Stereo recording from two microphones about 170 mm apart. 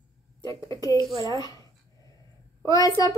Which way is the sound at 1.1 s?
20° right (ahead or behind).